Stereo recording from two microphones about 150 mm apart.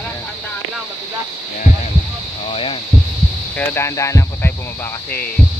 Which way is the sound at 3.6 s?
15° left (ahead or behind).